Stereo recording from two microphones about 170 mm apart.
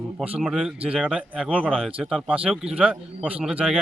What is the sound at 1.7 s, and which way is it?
A man's voice, 5° left (ahead or behind).